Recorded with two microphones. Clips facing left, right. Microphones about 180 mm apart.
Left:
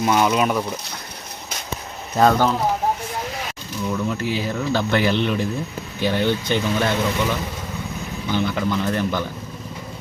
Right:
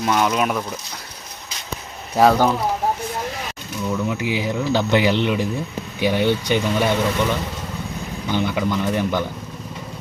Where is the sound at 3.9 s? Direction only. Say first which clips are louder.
Right 1 dB; 10° right (ahead or behind).